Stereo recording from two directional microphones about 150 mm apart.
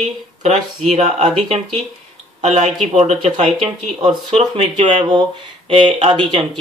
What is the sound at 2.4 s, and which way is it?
Speech, 50° right (ahead or behind).